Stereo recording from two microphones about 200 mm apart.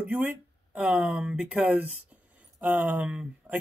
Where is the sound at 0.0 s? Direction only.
10° right (ahead or behind).